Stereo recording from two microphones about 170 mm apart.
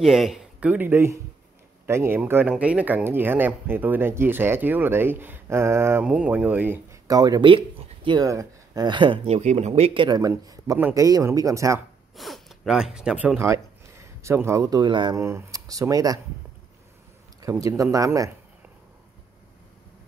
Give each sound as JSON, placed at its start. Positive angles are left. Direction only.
{"t": 0.0, "sound": "speech", "side_deg": 0}
{"t": 12.2, "sound": "speech", "side_deg": 0}
{"t": 17.4, "sound": "speech", "side_deg": -20}